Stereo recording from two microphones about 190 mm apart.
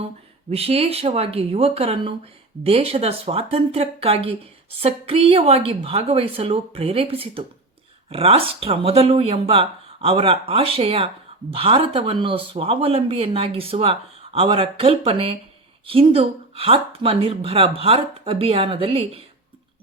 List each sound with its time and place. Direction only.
0.5 s a woman's voice: 30° right (ahead or behind)